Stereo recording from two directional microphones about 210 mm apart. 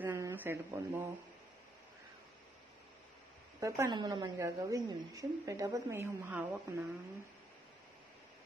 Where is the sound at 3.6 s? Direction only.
15° right (ahead or behind).